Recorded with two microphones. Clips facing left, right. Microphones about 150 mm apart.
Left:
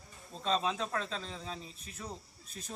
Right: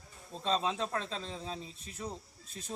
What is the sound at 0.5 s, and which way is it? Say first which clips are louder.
A man's voice: even; 25° right (ahead or behind).